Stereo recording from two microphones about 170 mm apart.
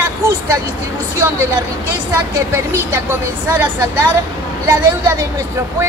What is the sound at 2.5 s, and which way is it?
Speech, 15° right (ahead or behind).